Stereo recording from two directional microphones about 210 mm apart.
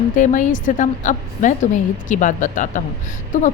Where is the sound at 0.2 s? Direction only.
40° left (ahead or behind).